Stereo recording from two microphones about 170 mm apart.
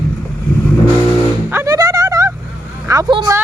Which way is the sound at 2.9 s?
25° right (ahead or behind).